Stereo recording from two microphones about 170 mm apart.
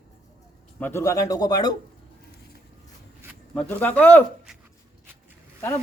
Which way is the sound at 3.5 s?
10° left (ahead or behind).